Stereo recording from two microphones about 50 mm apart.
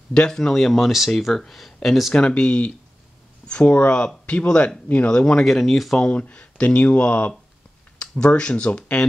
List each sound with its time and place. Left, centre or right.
0.3 s speech: centre
2.1 s speech: left
5.4 s speech: centre
6.0 s speech: left